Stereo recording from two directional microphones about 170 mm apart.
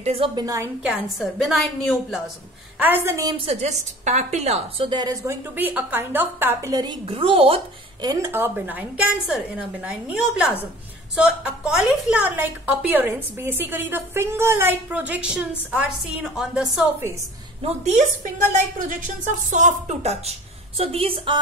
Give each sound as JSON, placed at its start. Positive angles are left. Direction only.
{"t": 0.0, "sound": "speech", "side_deg": -35}
{"t": 0.4, "sound": "a woman's voice", "side_deg": -20}
{"t": 1.2, "sound": "a woman's voice", "side_deg": 0}
{"t": 2.8, "sound": "a woman's voice", "side_deg": -15}
{"t": 3.4, "sound": "a woman's voice", "side_deg": -40}
{"t": 17.6, "sound": "speech", "side_deg": -40}